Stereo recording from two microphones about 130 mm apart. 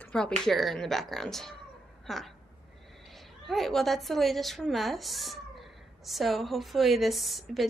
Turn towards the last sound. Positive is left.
turn(degrees=0)  # may be behind; listen again after turning